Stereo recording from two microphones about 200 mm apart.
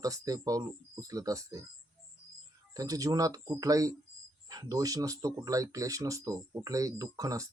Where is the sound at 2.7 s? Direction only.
15° right (ahead or behind).